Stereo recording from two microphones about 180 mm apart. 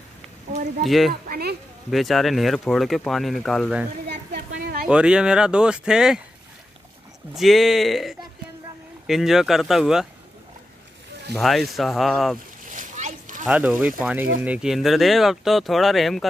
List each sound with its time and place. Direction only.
0.8 s speech: centre (ahead or behind)
1.3 s speech: 60° right (ahead or behind)
1.9 s speech: centre (ahead or behind)
4.1 s a sound: 70° right (ahead or behind)
4.8 s speech: 5° right (ahead or behind)
7.3 s speech: centre (ahead or behind)
11.3 s speech: centre (ahead or behind)
12.7 s splash: 45° right (ahead or behind)
13.5 s speech: 5° right (ahead or behind)